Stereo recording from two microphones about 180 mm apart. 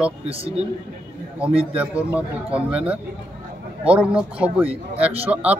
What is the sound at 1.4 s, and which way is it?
Speech, 10° right (ahead or behind).